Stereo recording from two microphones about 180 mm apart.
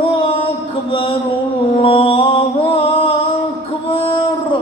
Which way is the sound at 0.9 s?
30° left (ahead or behind).